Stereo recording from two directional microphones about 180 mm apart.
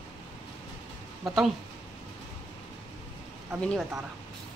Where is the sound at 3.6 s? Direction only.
5° left (ahead or behind).